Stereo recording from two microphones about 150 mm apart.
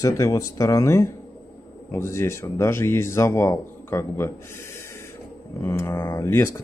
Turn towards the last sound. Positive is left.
turn(degrees=15)  # may be behind; listen again after turning